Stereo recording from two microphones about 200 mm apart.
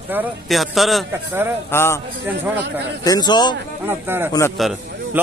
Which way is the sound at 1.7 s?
10° left (ahead or behind).